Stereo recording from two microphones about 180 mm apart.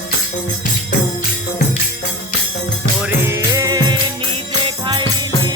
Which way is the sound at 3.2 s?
15° right (ahead or behind).